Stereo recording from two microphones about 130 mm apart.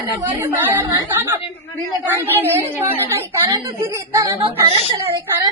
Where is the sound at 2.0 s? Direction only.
15° right (ahead or behind).